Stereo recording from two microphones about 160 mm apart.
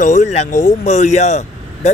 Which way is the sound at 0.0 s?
50° left (ahead or behind).